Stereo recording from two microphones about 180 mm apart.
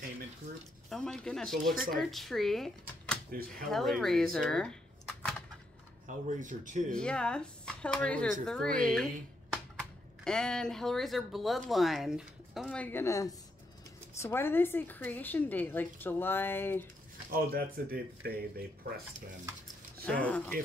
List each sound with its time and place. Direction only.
0.8 s speech: 5° left (ahead or behind)
3.3 s speech: 55° right (ahead or behind)
3.7 s speech: centre (ahead or behind)
6.0 s speech: 45° right (ahead or behind)
6.9 s speech: 5° left (ahead or behind)
17.3 s speech: 55° right (ahead or behind)
20.1 s speech: 5° left (ahead or behind)